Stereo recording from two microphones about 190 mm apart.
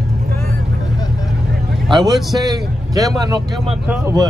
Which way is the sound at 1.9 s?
25° right (ahead or behind).